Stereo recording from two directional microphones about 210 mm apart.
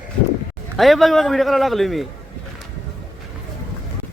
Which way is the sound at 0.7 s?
Centre (ahead or behind).